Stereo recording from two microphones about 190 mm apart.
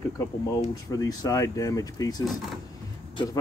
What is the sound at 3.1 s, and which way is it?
Speech, 20° left (ahead or behind).